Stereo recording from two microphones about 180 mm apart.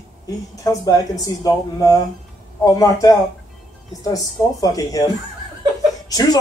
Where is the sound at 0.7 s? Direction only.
20° left (ahead or behind).